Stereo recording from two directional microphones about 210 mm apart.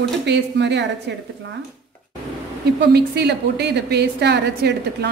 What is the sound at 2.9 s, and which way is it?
A woman's voice, 50° right (ahead or behind).